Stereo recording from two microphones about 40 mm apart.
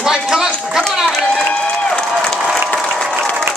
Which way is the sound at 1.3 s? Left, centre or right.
Left.